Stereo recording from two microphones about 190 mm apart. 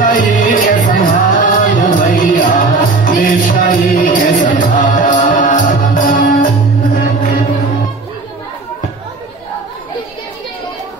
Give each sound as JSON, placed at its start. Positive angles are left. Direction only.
{"t": 0.0, "sound": "music", "side_deg": 45}